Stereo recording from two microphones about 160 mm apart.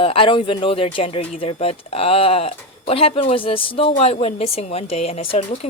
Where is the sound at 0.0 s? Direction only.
35° left (ahead or behind).